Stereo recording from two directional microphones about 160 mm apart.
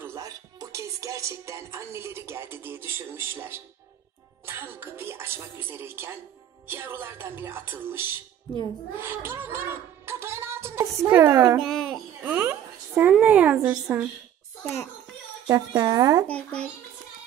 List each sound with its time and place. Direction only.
0.0 s music: 20° right (ahead or behind)
4.5 s a child's voice: 15° right (ahead or behind)
11.6 s a sound: centre (ahead or behind)
13.2 s speech: 10° right (ahead or behind)
14.6 s a child's voice: 5° left (ahead or behind)
15.4 s speech: 25° right (ahead or behind)
16.3 s a child's voice: 10° left (ahead or behind)